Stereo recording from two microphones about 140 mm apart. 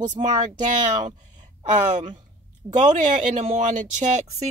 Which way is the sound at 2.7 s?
60° right (ahead or behind).